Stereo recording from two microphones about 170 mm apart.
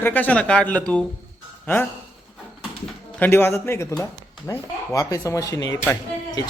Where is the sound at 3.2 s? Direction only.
10° left (ahead or behind).